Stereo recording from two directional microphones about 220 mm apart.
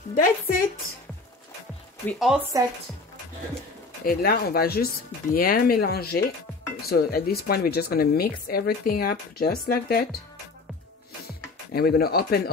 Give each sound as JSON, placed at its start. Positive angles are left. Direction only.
{"t": 0.1, "sound": "a woman's voice", "side_deg": 40}
{"t": 2.0, "sound": "speech", "side_deg": 0}
{"t": 4.0, "sound": "speech", "side_deg": 45}
{"t": 11.7, "sound": "speech", "side_deg": 45}